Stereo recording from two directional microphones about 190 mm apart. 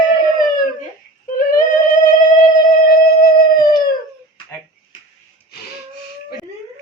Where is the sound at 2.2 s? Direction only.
45° left (ahead or behind).